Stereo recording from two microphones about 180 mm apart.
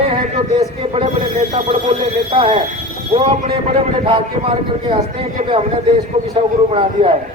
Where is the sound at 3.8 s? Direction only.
30° right (ahead or behind).